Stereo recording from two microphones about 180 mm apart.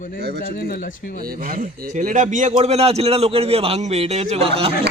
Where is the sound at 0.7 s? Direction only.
55° left (ahead or behind).